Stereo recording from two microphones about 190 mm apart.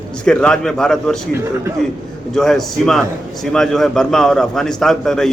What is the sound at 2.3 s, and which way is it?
A man's voice, centre (ahead or behind).